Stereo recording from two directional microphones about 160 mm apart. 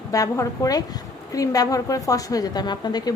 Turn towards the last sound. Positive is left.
turn(degrees=25)  # may be behind; listen again after turning